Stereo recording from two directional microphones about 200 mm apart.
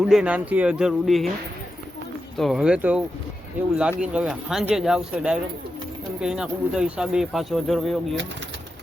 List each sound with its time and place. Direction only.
0.0 s speech: 5° right (ahead or behind)
2.4 s speech: centre (ahead or behind)